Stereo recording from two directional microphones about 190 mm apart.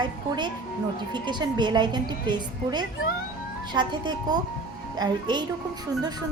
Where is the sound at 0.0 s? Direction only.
25° right (ahead or behind).